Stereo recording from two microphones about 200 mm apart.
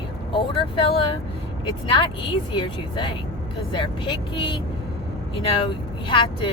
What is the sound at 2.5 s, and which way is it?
Speech, 25° left (ahead or behind).